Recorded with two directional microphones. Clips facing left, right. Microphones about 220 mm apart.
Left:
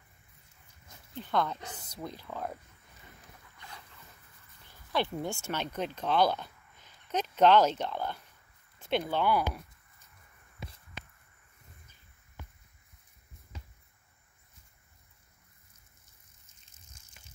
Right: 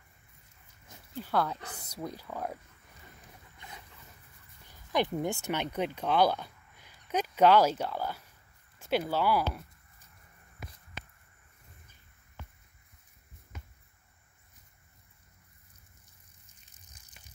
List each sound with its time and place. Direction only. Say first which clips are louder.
1.1 s speech: even; 5° right (ahead or behind)
3.5 s boat: right 1 dB; 20° right (ahead or behind)
4.6 s speech: right 2 dB; 15° right (ahead or behind)